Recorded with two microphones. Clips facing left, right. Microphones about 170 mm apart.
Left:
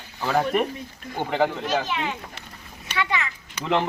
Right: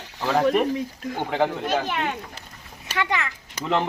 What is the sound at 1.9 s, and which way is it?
Speech, 50° right (ahead or behind).